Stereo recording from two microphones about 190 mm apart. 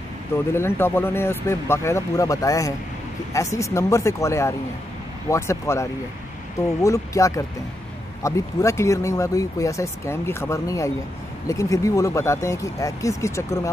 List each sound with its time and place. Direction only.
0.5 s speech: 15° left (ahead or behind)